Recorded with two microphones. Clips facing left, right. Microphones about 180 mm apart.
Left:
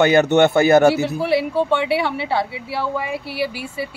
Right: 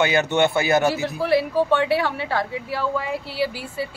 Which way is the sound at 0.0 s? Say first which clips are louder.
Left 6 dB; 50° left (ahead or behind).